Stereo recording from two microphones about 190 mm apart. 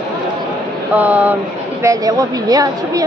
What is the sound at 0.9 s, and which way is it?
A woman's voice, 10° right (ahead or behind).